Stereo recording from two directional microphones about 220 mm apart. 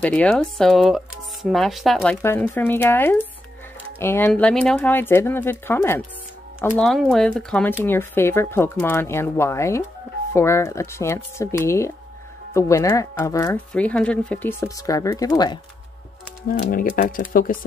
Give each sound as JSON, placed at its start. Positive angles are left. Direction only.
{"t": 0.0, "sound": "speech", "side_deg": 5}
{"t": 16.4, "sound": "speech", "side_deg": 40}